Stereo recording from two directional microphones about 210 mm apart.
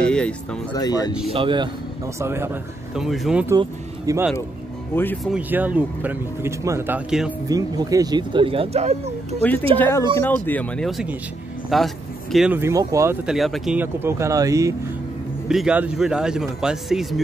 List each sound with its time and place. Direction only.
0.7 s speech: 20° left (ahead or behind)
1.3 s speech: 25° right (ahead or behind)
2.1 s speech: 10° right (ahead or behind)
3.4 s speech: 15° right (ahead or behind)
4.9 s speech: 10° left (ahead or behind)
5.3 s speech: 5° right (ahead or behind)
7.4 s speech: 15° right (ahead or behind)
9.4 s speech: 10° left (ahead or behind); by 13.2 s 15° right (ahead or behind)
13.3 s speech: centre (ahead or behind)
15.4 s speech: 5° right (ahead or behind)